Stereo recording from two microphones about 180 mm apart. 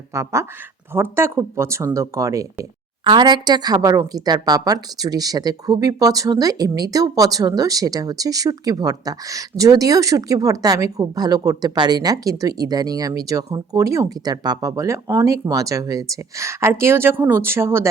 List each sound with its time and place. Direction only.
0.1 s speech: 15° right (ahead or behind)